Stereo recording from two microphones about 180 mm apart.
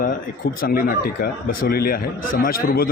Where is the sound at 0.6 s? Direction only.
55° left (ahead or behind).